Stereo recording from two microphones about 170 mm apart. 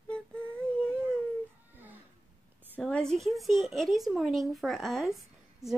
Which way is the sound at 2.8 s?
5° left (ahead or behind).